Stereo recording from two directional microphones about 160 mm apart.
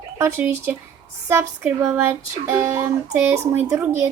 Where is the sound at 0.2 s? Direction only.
15° right (ahead or behind).